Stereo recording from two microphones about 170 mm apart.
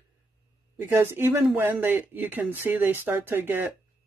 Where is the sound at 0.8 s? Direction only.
15° right (ahead or behind).